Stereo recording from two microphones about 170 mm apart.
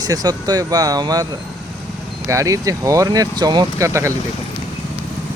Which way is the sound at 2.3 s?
20° right (ahead or behind).